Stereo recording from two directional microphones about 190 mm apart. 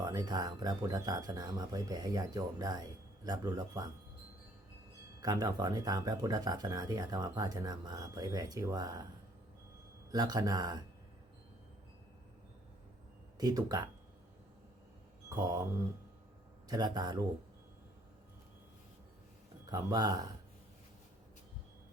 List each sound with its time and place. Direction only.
0.0 s speech: 20° right (ahead or behind)
5.2 s speech: 20° right (ahead or behind)
10.1 s speech: 20° right (ahead or behind)
13.4 s speech: 20° right (ahead or behind)
15.4 s speech: 20° right (ahead or behind)
16.6 s speech: 20° right (ahead or behind)
19.7 s speech: 20° right (ahead or behind)